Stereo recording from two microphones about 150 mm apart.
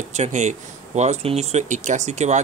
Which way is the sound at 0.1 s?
50° right (ahead or behind).